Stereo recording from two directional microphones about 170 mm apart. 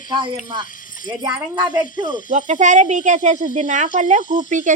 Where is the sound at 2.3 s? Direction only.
45° right (ahead or behind).